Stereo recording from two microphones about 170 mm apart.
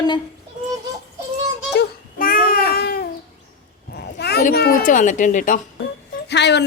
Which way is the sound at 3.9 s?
70° left (ahead or behind).